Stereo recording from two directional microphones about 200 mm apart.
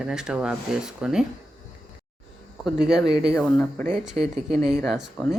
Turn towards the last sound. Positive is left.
turn(degrees=0)  # may be behind; listen again after turning